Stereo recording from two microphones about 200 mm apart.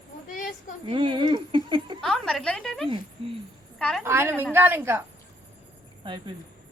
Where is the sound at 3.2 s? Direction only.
30° right (ahead or behind).